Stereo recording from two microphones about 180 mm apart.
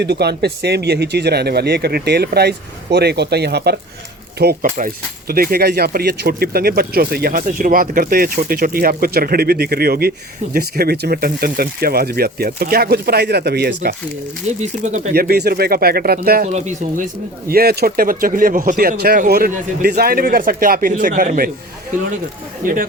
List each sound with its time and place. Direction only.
0.0 s speech: 65° right (ahead or behind)
4.4 s speech: 55° right (ahead or behind)
14.6 s speech: 40° right (ahead or behind)
15.1 s speech: 60° right (ahead or behind)
16.5 s speech: 40° right (ahead or behind)
17.5 s speech: 60° right (ahead or behind)
22.6 s speech: 50° right (ahead or behind)